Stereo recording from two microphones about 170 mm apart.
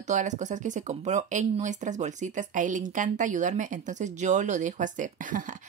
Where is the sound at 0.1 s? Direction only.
45° right (ahead or behind).